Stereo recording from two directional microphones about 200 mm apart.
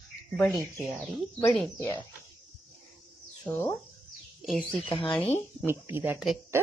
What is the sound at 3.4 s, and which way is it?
Speech, 10° left (ahead or behind).